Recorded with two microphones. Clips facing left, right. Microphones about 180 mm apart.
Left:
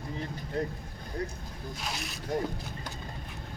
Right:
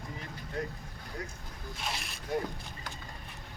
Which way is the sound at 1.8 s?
Centre (ahead or behind).